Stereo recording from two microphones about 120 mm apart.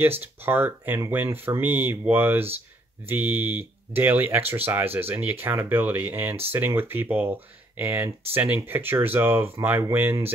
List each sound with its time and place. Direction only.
0.2 s speech: 15° right (ahead or behind)